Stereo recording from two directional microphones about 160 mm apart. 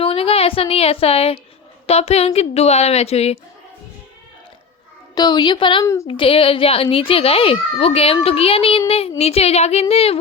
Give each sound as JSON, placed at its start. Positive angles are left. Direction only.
{"t": 0.0, "sound": "a woman's voice", "side_deg": 35}
{"t": 5.1, "sound": "a woman's voice", "side_deg": 25}
{"t": 5.8, "sound": "speech", "side_deg": 20}
{"t": 6.1, "sound": "a child's voice", "side_deg": 35}